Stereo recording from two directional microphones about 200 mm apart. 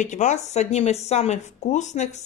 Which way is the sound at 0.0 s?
35° left (ahead or behind).